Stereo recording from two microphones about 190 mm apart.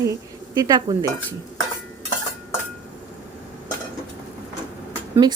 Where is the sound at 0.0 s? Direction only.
15° right (ahead or behind).